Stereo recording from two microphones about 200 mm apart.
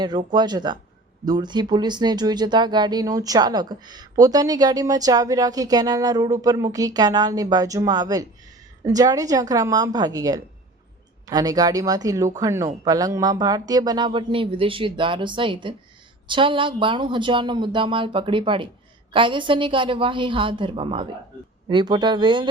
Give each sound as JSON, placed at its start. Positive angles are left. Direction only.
{"t": 0.0, "sound": "a woman's voice", "side_deg": -20}